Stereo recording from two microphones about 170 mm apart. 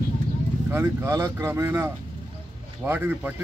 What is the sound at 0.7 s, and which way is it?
Speech, 15° right (ahead or behind).